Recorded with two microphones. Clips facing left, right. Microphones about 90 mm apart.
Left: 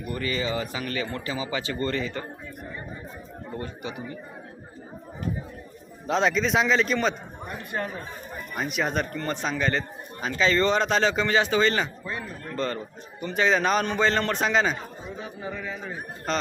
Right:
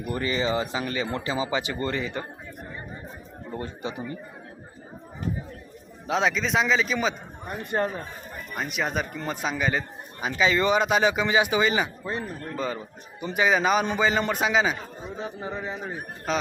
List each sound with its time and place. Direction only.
0.1 s speech: 25° right (ahead or behind)
3.8 s speech: 30° right (ahead or behind)
6.1 s a man's voice: centre (ahead or behind)
7.7 s speech: 35° right (ahead or behind)
8.5 s a man's voice: centre (ahead or behind)
15.2 s speech: 25° right (ahead or behind)
16.3 s a man's voice: 5° right (ahead or behind)